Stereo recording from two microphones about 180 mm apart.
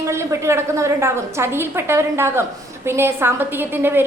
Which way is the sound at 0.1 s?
15° right (ahead or behind).